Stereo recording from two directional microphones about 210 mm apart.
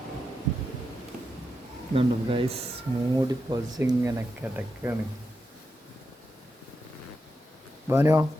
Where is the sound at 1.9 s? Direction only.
25° right (ahead or behind); by 4.9 s 10° right (ahead or behind).